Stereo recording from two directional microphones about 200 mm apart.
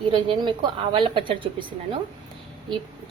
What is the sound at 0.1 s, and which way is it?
A woman's voice, 25° right (ahead or behind).